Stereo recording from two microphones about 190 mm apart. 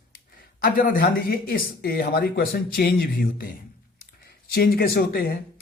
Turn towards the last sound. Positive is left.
turn(degrees=55)  # may be behind; listen again after turning